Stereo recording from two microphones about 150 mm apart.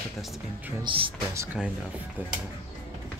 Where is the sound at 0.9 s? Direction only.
30° right (ahead or behind).